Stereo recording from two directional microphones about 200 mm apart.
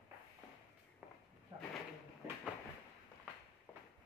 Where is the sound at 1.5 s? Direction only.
25° right (ahead or behind).